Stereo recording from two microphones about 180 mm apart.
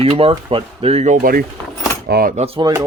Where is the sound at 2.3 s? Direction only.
30° right (ahead or behind).